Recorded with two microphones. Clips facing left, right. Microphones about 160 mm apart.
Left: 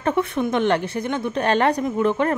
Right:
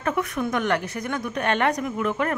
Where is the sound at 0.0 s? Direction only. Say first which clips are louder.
Left 4 dB; 30° left (ahead or behind).